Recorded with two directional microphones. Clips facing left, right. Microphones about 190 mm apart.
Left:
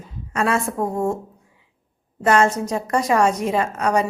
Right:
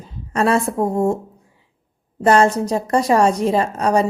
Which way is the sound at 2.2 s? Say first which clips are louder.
Right 3 dB; 35° right (ahead or behind).